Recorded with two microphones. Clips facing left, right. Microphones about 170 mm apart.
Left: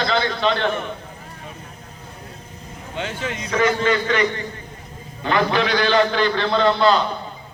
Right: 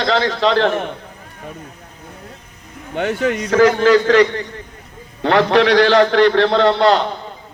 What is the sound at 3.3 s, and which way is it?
A man's voice, 75° right (ahead or behind).